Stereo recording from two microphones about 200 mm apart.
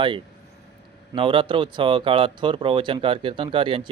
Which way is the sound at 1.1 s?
25° right (ahead or behind).